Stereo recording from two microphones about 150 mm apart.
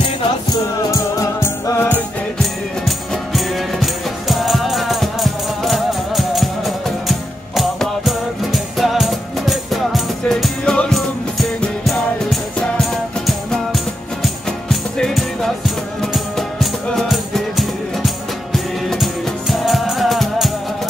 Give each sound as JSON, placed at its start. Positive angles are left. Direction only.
{"t": 0.5, "sound": "music", "side_deg": 25}
{"t": 3.1, "sound": "music", "side_deg": 0}